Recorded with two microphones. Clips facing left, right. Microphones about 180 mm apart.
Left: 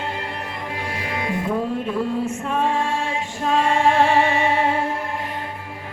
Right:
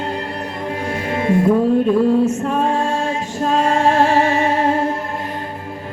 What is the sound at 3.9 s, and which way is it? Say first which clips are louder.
Music: right 2 dB; 40° right (ahead or behind).